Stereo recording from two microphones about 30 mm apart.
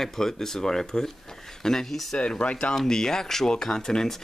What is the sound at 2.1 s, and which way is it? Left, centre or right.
Speech, left.